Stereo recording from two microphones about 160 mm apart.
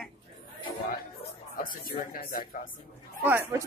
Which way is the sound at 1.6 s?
65° left (ahead or behind).